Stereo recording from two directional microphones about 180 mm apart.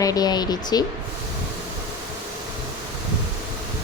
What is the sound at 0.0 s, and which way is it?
Speech, 20° left (ahead or behind).